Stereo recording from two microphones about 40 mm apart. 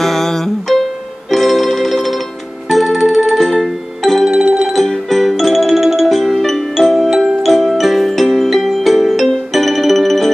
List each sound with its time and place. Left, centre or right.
0.0 s music: centre
4.4 s music: right
4.7 s music: centre